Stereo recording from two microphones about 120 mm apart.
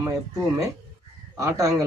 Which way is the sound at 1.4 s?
25° right (ahead or behind).